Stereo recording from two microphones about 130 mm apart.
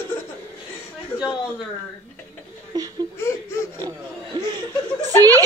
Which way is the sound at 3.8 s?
30° right (ahead or behind).